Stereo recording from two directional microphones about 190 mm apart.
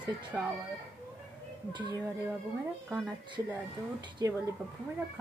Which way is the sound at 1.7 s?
25° right (ahead or behind).